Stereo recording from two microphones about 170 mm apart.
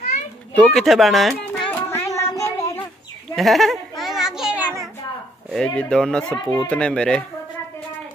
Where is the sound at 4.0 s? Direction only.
Centre (ahead or behind).